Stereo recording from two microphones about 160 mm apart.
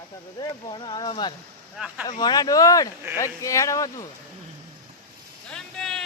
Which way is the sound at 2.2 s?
25° left (ahead or behind).